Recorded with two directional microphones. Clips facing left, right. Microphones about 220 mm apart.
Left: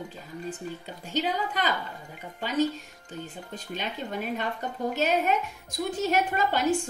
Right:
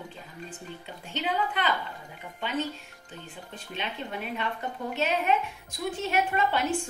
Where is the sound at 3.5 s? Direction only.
40° left (ahead or behind).